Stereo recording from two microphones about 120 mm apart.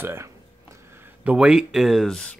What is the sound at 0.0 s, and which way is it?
Speech, 20° right (ahead or behind).